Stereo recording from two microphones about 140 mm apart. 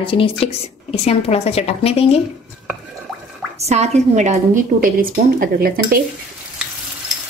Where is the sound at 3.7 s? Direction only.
50° right (ahead or behind); by 6.0 s 90° right.